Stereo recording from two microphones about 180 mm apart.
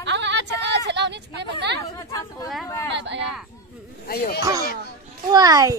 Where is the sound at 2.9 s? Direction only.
75° right (ahead or behind).